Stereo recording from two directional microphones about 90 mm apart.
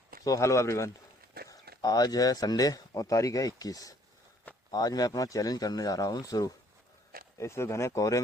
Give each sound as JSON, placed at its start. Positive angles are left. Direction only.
{"t": 0.3, "sound": "speech", "side_deg": 35}
{"t": 1.5, "sound": "speech", "side_deg": 45}
{"t": 7.3, "sound": "speech", "side_deg": 30}